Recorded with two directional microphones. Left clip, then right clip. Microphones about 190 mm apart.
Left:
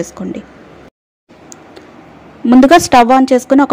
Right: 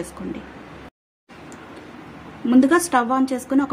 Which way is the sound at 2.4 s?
40° left (ahead or behind).